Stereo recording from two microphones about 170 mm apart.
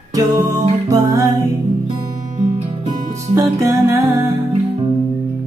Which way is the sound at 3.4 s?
15° right (ahead or behind).